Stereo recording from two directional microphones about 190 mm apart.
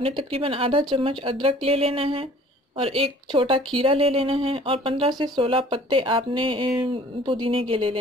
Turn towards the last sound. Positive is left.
turn(degrees=-30)  # may be behind; listen again after turning